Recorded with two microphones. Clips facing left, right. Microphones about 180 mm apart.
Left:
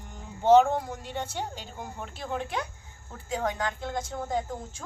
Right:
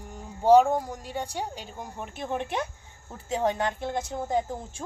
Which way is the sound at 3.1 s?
25° right (ahead or behind).